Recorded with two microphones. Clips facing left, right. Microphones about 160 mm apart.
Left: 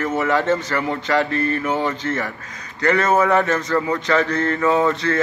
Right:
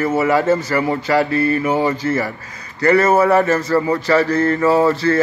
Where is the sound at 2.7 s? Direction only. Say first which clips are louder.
Right 4 dB; 5° right (ahead or behind).